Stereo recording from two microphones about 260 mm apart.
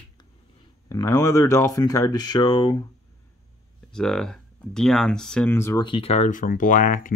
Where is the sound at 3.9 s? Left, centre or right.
Centre.